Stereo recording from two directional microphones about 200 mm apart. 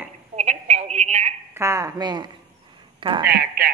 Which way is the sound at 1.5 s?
15° right (ahead or behind).